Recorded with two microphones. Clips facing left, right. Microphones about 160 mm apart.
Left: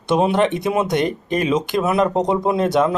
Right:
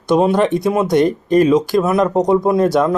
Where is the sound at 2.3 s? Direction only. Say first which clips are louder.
Right 5 dB; 20° left (ahead or behind).